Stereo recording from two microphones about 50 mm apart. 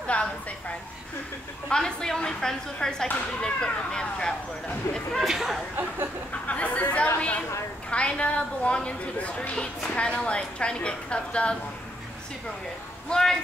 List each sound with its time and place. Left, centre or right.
0.0 s a sound: left
1.7 s a woman's voice: centre
4.9 s speech: left
5.2 s speech: centre
6.4 s a woman's voice: left
13.1 s a woman's voice: centre